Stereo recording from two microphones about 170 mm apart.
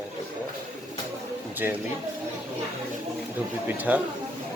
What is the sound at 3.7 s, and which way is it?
Speech, 10° right (ahead or behind).